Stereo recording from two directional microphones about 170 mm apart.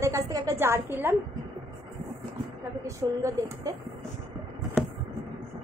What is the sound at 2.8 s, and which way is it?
Speech, 20° right (ahead or behind).